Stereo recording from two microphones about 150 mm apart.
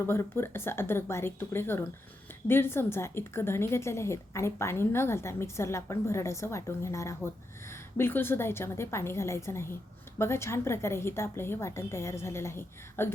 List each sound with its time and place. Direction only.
0.0 s a woman's voice: 15° left (ahead or behind)